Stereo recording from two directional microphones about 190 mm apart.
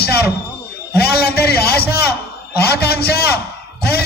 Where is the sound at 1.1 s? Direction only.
55° left (ahead or behind).